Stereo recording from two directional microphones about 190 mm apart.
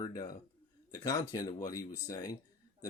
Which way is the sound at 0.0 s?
20° left (ahead or behind).